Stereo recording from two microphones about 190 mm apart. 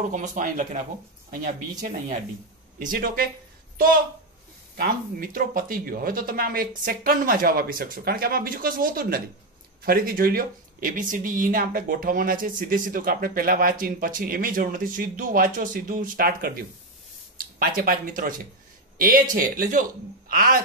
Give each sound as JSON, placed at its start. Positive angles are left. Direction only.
{"t": 0.1, "sound": "speech", "side_deg": -40}
{"t": 4.7, "sound": "speech", "side_deg": -50}